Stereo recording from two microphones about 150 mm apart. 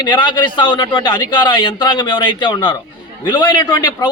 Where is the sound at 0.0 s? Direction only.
30° left (ahead or behind).